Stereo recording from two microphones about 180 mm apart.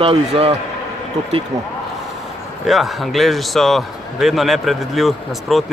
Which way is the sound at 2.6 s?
Centre (ahead or behind).